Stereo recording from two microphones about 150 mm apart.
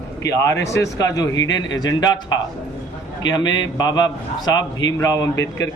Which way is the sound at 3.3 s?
30° left (ahead or behind).